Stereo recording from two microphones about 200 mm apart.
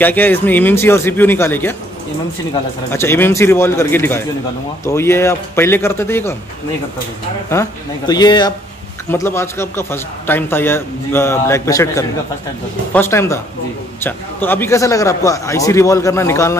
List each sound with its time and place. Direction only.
0.0 s a man's voice: 10° left (ahead or behind)
2.9 s a man's voice: 10° left (ahead or behind)
8.1 s a man's voice: 20° left (ahead or behind)